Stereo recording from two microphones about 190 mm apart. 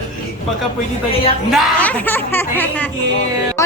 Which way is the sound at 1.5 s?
5° left (ahead or behind).